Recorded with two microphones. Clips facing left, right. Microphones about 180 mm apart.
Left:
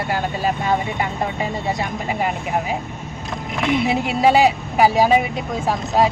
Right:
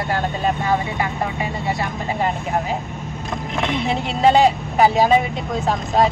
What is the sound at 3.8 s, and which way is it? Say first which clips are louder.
Speech: right 1 dB; 10° left (ahead or behind).